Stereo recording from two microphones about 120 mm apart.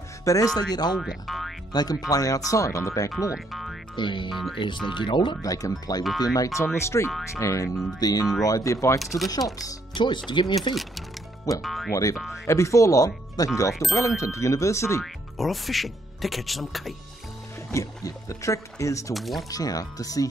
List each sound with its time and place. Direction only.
0.2 s speech: 25° left (ahead or behind)
1.0 s speech: centre (ahead or behind)
1.7 s speech: 35° left (ahead or behind)
3.3 s speech: centre (ahead or behind)
3.9 s speech: 40° left (ahead or behind)
4.3 s speech: centre (ahead or behind)
4.8 s speech: 40° left (ahead or behind)
10.7 s speech: centre (ahead or behind)
11.9 s speech: 30° left (ahead or behind)
15.3 s speech: centre (ahead or behind)
17.7 s speech: 25° left (ahead or behind)
19.1 s speech: centre (ahead or behind)
19.5 s speech: 30° left (ahead or behind)